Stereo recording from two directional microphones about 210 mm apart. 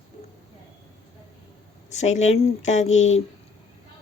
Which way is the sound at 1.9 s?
35° left (ahead or behind).